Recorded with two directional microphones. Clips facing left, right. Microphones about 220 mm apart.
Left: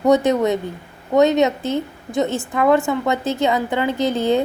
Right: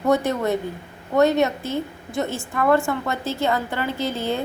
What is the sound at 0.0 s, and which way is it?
A woman's voice, 20° left (ahead or behind).